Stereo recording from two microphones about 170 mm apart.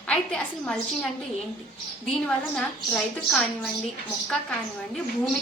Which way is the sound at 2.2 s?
5° left (ahead or behind).